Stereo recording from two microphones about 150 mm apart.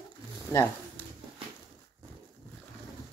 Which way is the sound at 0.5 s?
15° left (ahead or behind).